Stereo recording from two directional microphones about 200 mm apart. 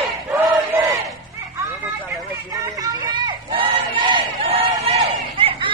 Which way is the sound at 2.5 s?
15° right (ahead or behind).